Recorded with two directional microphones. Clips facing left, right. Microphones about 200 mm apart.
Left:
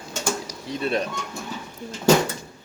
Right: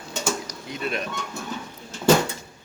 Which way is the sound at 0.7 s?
35° left (ahead or behind).